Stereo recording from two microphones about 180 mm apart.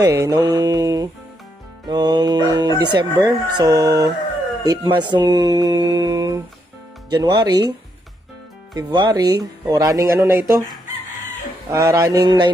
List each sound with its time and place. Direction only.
0.0 s mantra: 20° right (ahead or behind)
1.9 s speech: 25° right (ahead or behind)
8.7 s speech: 20° right (ahead or behind)
11.7 s speech: 15° right (ahead or behind)